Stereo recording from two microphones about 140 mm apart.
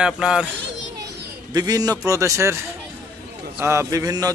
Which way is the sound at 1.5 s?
30° right (ahead or behind).